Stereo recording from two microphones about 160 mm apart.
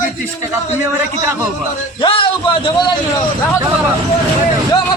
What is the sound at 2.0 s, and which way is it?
Speech, 35° left (ahead or behind).